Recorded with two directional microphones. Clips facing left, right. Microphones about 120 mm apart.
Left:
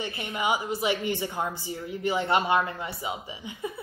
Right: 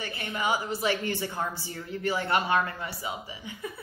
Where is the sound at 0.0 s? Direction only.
20° left (ahead or behind).